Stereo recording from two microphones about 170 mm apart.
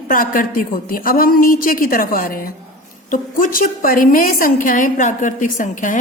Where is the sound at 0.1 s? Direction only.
55° left (ahead or behind).